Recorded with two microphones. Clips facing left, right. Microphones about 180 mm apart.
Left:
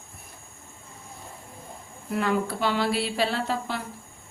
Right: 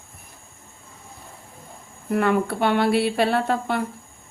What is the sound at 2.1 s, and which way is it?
Speech, 55° right (ahead or behind).